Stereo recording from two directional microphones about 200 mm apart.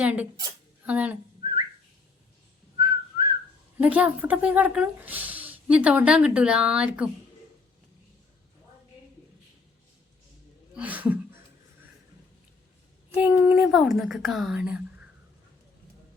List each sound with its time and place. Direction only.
0.0 s a woman's voice: 5° right (ahead or behind)
2.7 s whistling: 20° right (ahead or behind)
3.8 s speech: 5° right (ahead or behind)
10.8 s a sound: 5° right (ahead or behind)
13.1 s a woman's voice: 5° right (ahead or behind)